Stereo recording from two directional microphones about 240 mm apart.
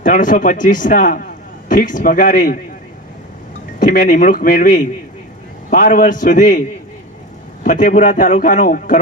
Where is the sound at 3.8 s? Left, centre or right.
Left.